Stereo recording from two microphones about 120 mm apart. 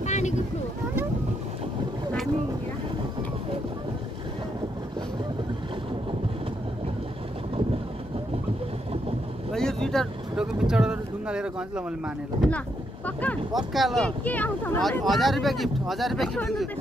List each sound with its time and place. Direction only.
0.0 s boat: 75° left (ahead or behind)
9.5 s vehicle: 5° left (ahead or behind)
12.4 s speech: 10° left (ahead or behind)
13.7 s speech: centre (ahead or behind)
14.2 s speech: 15° left (ahead or behind)
14.8 s speech: centre (ahead or behind)